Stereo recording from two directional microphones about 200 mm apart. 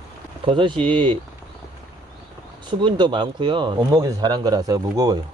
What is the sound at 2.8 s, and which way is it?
Speech, 25° right (ahead or behind).